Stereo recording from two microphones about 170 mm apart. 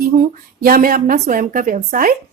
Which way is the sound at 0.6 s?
60° right (ahead or behind).